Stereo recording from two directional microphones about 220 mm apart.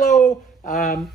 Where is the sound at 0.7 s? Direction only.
35° left (ahead or behind).